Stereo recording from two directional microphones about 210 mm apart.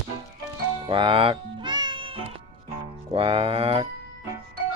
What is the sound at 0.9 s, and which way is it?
Cat, 25° right (ahead or behind).